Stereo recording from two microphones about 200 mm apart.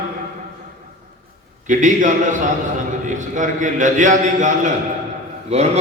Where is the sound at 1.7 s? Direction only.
40° right (ahead or behind).